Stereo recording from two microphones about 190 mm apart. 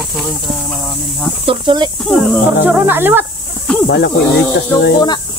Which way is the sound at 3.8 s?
60° left (ahead or behind).